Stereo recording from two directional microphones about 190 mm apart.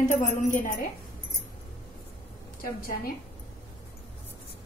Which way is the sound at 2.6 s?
50° left (ahead or behind).